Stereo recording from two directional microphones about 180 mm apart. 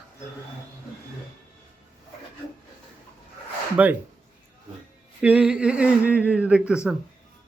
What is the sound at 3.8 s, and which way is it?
Speech, 5° right (ahead or behind).